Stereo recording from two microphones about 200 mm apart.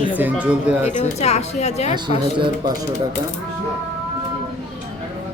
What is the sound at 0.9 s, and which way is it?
Speech, 35° left (ahead or behind).